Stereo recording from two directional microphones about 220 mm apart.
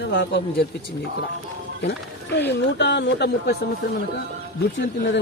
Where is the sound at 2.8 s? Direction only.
50° left (ahead or behind).